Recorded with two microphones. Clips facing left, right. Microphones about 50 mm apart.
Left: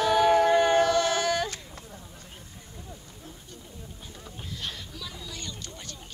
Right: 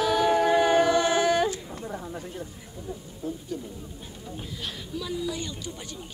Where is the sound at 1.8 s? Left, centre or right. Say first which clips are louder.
Right 12 dB; right.